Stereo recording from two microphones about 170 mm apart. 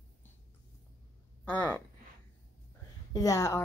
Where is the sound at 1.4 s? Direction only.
10° left (ahead or behind).